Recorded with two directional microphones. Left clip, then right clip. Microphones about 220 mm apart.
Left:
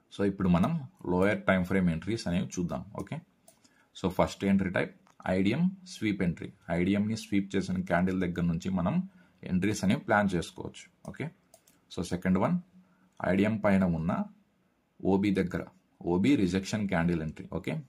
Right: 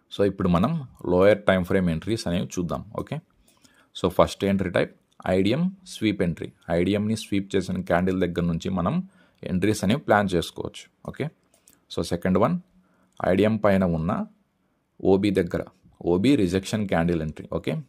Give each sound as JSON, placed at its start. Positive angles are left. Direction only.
{"t": 0.1, "sound": "speech", "side_deg": -40}